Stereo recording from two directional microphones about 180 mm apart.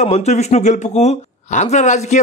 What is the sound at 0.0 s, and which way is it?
A man's voice, 40° left (ahead or behind).